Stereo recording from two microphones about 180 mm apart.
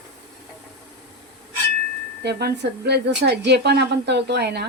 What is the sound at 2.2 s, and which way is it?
Speech, 65° right (ahead or behind).